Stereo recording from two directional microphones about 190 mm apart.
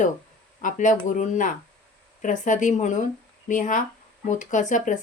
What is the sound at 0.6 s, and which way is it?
Speech, 40° left (ahead or behind).